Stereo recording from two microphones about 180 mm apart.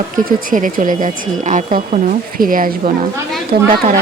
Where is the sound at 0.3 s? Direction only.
45° right (ahead or behind).